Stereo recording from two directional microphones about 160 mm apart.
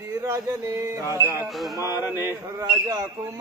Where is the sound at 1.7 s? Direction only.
15° right (ahead or behind).